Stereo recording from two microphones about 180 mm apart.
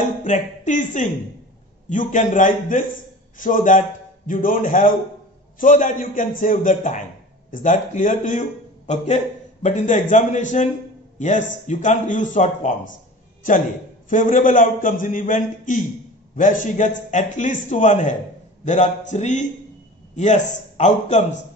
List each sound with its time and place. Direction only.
0.2 s a man's voice: 45° left (ahead or behind)
14.0 s a man's voice: 45° left (ahead or behind)